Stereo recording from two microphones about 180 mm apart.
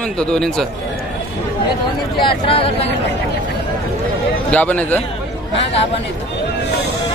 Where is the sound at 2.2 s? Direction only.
30° left (ahead or behind).